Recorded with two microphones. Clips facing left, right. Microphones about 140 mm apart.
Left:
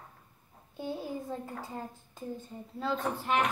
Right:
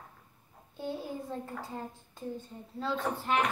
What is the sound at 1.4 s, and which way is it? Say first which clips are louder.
Speech: even; centre (ahead or behind).